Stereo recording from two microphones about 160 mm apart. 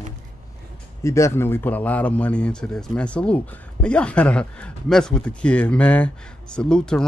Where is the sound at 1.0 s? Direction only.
20° left (ahead or behind).